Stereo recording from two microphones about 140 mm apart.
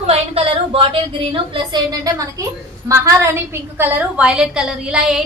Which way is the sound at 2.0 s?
25° right (ahead or behind).